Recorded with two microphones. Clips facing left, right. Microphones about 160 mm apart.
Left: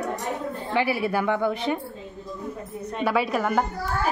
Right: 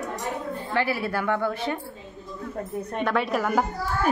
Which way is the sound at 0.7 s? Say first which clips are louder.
Left 2 dB; 15° left (ahead or behind).